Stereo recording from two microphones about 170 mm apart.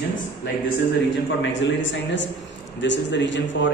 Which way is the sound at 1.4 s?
90° left.